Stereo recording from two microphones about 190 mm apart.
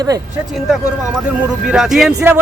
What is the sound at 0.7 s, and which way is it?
Speech, 5° right (ahead or behind).